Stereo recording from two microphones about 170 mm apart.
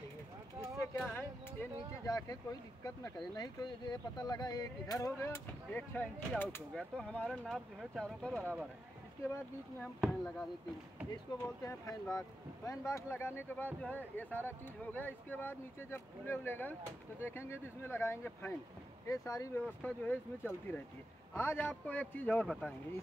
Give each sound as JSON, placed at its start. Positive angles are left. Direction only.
{"t": 0.9, "sound": "speech", "side_deg": 10}
{"t": 9.9, "sound": "speech", "side_deg": 0}
{"t": 11.1, "sound": "speech", "side_deg": 15}